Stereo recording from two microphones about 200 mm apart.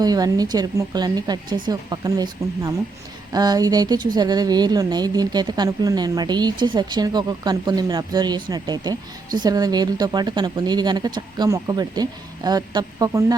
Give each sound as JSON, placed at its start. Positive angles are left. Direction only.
{"t": 0.0, "sound": "speech", "side_deg": -20}